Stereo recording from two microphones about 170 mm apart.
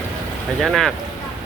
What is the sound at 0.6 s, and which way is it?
Speech, centre (ahead or behind).